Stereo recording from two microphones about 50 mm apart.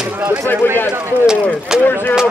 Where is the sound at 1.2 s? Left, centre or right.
Centre.